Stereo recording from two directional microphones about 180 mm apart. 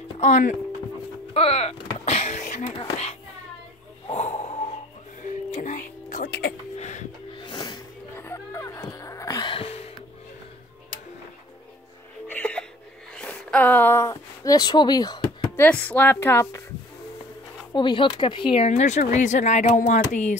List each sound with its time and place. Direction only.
0.2 s speech: 45° left (ahead or behind)
1.3 s a sound: 35° left (ahead or behind)
2.8 s speech: 35° left (ahead or behind)
4.1 s snort: 40° left (ahead or behind)
5.2 s music: 45° left (ahead or behind)
7.3 s music: 25° left (ahead or behind)
12.3 s music: 5° left (ahead or behind)
13.1 s a sound: 5° left (ahead or behind); by 15.6 s 20° left (ahead or behind)
15.6 s a woman's voice: 10° left (ahead or behind)
17.7 s speech: 25° left (ahead or behind)